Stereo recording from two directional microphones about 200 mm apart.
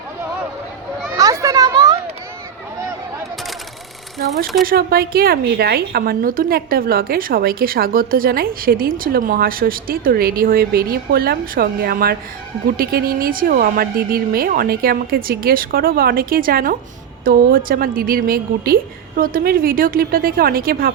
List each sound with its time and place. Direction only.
1.1 s chatter: 15° right (ahead or behind)
4.6 s a woman's voice: 50° right (ahead or behind)